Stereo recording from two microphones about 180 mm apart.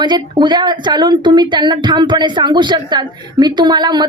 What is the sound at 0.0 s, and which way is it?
A woman's voice, 25° right (ahead or behind).